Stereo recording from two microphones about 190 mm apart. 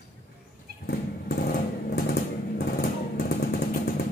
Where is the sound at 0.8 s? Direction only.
50° left (ahead or behind).